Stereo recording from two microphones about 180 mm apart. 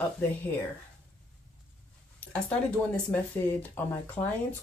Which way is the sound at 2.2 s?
10° left (ahead or behind).